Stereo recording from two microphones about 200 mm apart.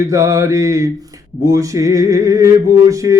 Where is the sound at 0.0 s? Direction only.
15° right (ahead or behind).